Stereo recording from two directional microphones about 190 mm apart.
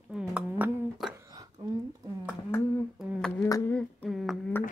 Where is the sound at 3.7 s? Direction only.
5° left (ahead or behind).